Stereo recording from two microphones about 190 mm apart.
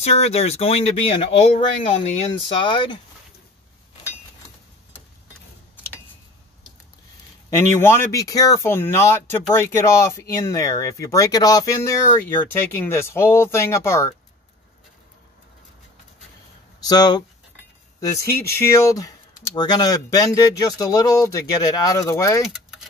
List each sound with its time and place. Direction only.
0.0 s speech: 35° left (ahead or behind)
7.4 s speech: 15° left (ahead or behind)
16.8 s speech: 20° left (ahead or behind)
18.7 s speech: 15° left (ahead or behind)
22.5 s keys jangling: 5° right (ahead or behind)